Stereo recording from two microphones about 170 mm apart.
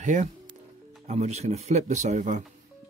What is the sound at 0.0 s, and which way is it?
Speech, 45° right (ahead or behind).